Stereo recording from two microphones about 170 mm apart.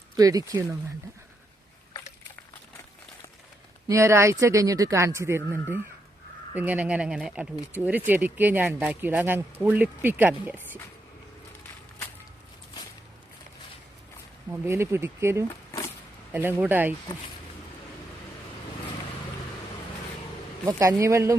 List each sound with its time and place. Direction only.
0.2 s speech: 20° right (ahead or behind)
3.8 s speech: 15° right (ahead or behind)
14.5 s speech: 15° right (ahead or behind)
20.7 s speech: 20° right (ahead or behind)